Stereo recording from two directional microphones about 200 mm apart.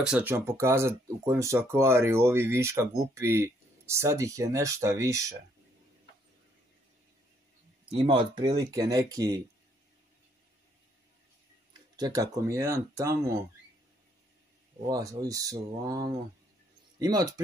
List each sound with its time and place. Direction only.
0.0 s speech: 5° right (ahead or behind)
7.9 s speech: 25° right (ahead or behind)
12.0 s speech: 15° right (ahead or behind)
14.9 s speech: 15° right (ahead or behind)